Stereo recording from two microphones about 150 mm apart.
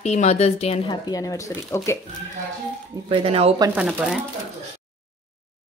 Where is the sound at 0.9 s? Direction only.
25° left (ahead or behind).